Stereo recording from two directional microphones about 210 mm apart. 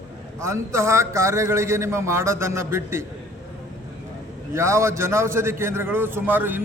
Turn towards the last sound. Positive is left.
turn(degrees=-10)  # may be behind; listen again after turning